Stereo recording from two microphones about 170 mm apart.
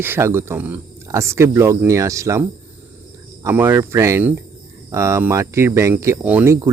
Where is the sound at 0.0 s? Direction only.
15° right (ahead or behind).